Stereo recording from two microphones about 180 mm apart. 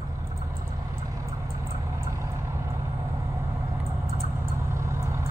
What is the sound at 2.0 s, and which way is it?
Vehicle, 15° right (ahead or behind).